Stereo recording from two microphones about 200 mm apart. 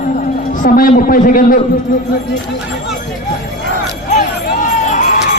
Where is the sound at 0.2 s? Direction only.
40° left (ahead or behind).